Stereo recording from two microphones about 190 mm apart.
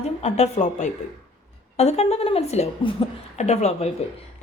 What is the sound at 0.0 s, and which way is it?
A woman's voice, 35° left (ahead or behind).